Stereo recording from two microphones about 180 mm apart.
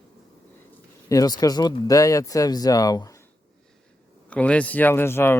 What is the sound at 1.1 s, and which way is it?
Speech, 20° left (ahead or behind).